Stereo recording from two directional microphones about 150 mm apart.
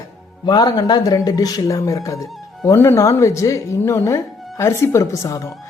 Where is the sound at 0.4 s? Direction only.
25° left (ahead or behind).